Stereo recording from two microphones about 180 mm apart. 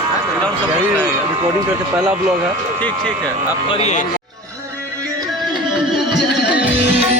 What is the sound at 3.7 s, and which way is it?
Speech, 35° left (ahead or behind).